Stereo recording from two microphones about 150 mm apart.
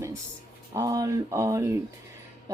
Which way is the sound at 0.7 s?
20° right (ahead or behind).